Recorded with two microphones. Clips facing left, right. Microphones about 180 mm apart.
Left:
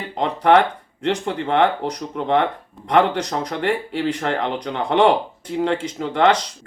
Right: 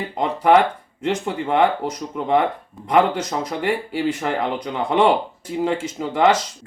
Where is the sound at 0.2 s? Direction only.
5° right (ahead or behind).